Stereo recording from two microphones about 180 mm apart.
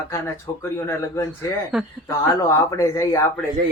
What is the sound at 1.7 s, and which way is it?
Speech, 5° right (ahead or behind).